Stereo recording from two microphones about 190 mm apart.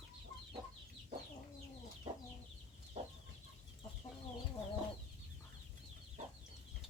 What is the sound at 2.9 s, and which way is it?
Chicken, 35° right (ahead or behind).